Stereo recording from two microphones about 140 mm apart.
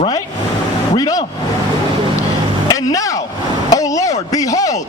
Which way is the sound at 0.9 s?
25° left (ahead or behind).